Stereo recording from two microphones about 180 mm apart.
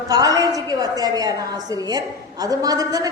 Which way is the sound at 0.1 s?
20° right (ahead or behind).